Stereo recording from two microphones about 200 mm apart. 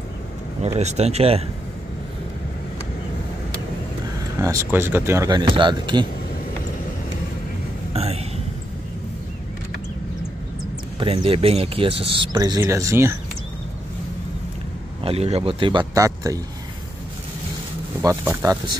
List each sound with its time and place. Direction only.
0.7 s speech: 35° right (ahead or behind)
4.4 s speech: 15° right (ahead or behind)
7.9 s a sound: 30° right (ahead or behind)
11.0 s speech: 30° right (ahead or behind)
15.0 s speech: 30° right (ahead or behind)
18.0 s speech: 15° right (ahead or behind)